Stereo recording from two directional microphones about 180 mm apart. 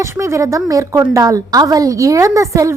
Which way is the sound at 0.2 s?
20° right (ahead or behind).